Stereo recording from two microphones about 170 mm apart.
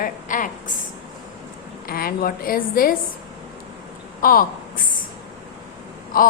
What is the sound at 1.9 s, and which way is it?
A woman's voice, 60° left (ahead or behind).